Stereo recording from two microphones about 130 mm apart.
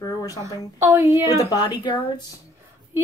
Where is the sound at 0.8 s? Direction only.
25° right (ahead or behind).